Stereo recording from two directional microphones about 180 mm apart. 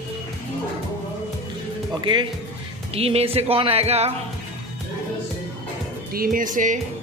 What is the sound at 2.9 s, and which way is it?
Speech, 35° right (ahead or behind).